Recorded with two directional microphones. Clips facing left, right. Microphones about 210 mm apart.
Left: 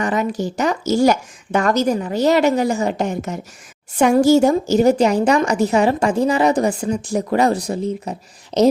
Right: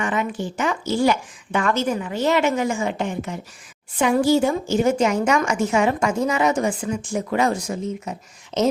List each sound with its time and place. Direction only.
0.0 s a woman's voice: 40° left (ahead or behind)